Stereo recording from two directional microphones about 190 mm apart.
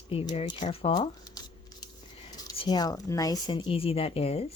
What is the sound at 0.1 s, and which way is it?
Speech, 30° left (ahead or behind).